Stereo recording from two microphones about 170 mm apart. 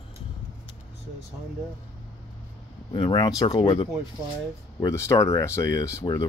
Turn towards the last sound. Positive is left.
turn(degrees=20)  # may be behind; listen again after turning